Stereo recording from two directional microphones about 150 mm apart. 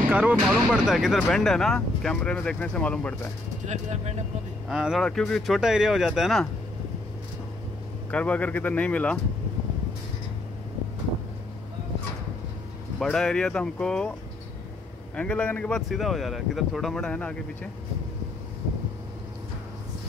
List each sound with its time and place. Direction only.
0.1 s speech: 10° right (ahead or behind); by 3.3 s 10° left (ahead or behind)
3.6 s speech: 50° right (ahead or behind)
4.6 s speech: 5° right (ahead or behind)
8.1 s speech: 10° left (ahead or behind)
13.0 s speech: 5° left (ahead or behind)
15.1 s speech: 10° left (ahead or behind)